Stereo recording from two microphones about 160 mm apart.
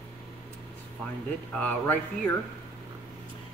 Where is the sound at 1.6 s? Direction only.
10° left (ahead or behind).